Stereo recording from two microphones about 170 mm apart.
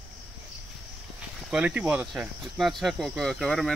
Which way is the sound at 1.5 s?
5° right (ahead or behind).